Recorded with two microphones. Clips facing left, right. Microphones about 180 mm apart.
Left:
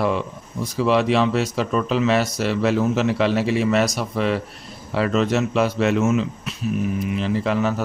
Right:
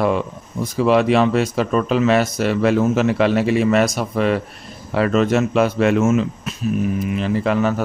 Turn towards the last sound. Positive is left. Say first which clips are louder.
# right 3 dB
turn(degrees=-55)  # may be behind; listen again after turning